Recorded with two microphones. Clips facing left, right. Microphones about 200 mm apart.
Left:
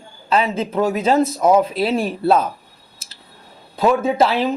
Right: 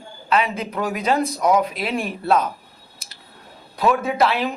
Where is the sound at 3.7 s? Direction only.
25° left (ahead or behind).